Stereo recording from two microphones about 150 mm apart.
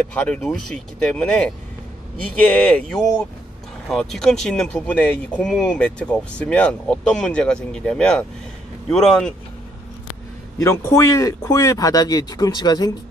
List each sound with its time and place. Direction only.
0.1 s speech: 10° left (ahead or behind)
2.5 s speech: 10° left (ahead or behind)
10.6 s speech: 20° left (ahead or behind)